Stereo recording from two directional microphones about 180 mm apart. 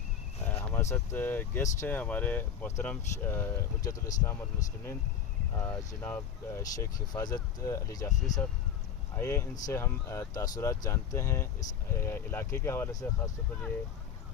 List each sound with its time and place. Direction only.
0.4 s speech: 10° left (ahead or behind)